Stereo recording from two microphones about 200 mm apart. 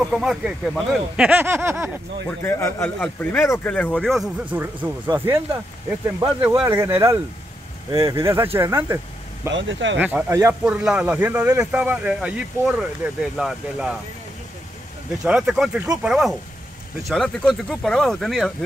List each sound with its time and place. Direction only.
0.0 s speech: centre (ahead or behind)
2.4 s speech: 10° left (ahead or behind)
4.5 s speech: 15° right (ahead or behind)
9.5 s speech: 70° right (ahead or behind)
9.9 s speech: 10° right (ahead or behind)
15.2 s speech: centre (ahead or behind)